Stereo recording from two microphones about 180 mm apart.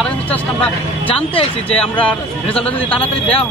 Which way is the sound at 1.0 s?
30° left (ahead or behind).